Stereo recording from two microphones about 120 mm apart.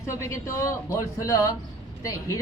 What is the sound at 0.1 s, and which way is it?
Speech, 25° left (ahead or behind).